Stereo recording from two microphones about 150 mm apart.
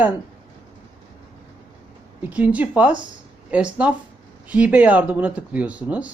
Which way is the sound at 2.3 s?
10° right (ahead or behind).